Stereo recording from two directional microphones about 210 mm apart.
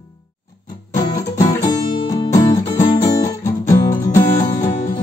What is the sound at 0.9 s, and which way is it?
Music, 15° left (ahead or behind).